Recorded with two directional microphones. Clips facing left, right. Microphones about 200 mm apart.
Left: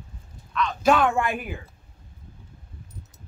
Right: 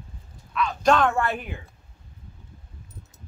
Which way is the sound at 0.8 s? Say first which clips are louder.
Even; 10° left (ahead or behind).